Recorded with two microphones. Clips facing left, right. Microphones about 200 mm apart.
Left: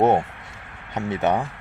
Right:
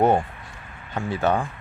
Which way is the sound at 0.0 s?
25° left (ahead or behind).